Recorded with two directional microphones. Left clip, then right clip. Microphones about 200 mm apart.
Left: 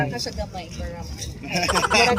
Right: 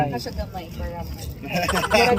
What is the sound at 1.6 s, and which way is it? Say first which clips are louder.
Speech: left 3 dB; centre (ahead or behind).